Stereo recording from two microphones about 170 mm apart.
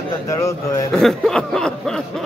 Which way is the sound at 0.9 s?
Centre (ahead or behind).